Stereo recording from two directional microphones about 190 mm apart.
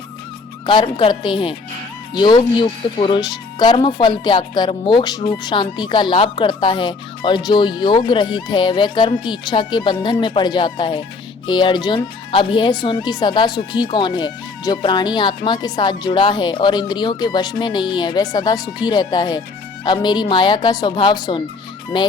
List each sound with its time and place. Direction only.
0.6 s speech: 25° left (ahead or behind)